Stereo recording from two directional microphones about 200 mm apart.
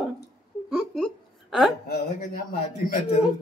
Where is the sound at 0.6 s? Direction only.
Centre (ahead or behind).